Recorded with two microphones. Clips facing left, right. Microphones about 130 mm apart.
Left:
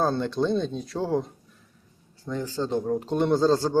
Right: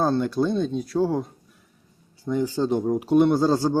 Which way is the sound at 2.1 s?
10° right (ahead or behind).